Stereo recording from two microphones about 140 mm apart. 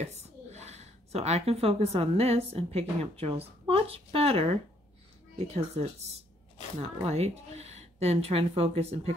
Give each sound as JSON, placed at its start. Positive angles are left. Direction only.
{"t": 0.0, "sound": "a woman's voice", "side_deg": -50}